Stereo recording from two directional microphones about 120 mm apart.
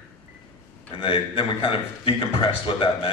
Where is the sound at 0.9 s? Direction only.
50° left (ahead or behind).